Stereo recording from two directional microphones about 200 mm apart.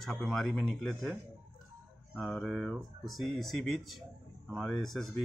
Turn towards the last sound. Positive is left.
turn(degrees=0)  # may be behind; listen again after turning